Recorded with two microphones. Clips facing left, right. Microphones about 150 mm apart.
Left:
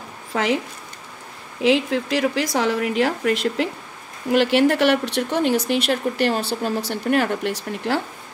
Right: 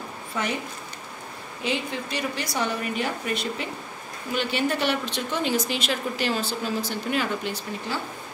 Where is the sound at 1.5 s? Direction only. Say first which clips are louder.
Left 10 dB; 90° left.